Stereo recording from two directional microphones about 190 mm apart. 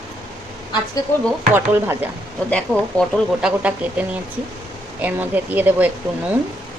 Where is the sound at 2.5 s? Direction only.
5° left (ahead or behind).